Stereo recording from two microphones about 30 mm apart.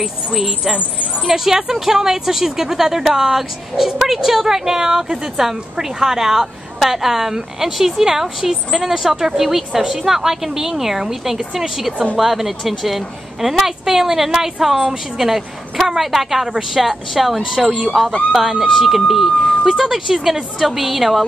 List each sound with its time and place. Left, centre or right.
0.0 s a woman's voice: centre